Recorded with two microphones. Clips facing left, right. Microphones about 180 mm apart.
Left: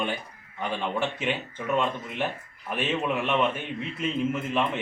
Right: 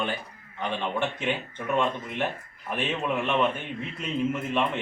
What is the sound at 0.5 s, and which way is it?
Speech, 5° left (ahead or behind).